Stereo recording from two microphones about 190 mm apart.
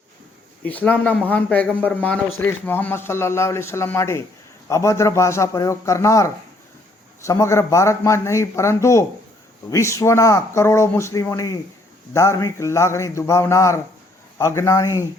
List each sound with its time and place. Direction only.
0.6 s speech: 10° left (ahead or behind)